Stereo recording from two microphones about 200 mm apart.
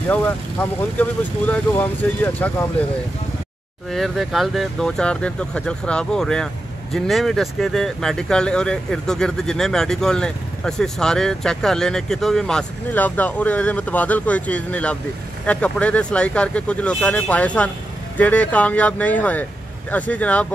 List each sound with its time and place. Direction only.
0.1 s speech: 5° left (ahead or behind)
3.9 s speech: centre (ahead or behind)